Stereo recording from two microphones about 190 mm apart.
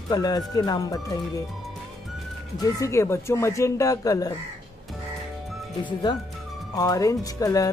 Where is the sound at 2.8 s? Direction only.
15° left (ahead or behind).